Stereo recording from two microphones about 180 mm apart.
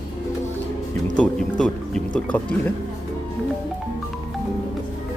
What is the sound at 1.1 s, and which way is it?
Speech, 5° left (ahead or behind).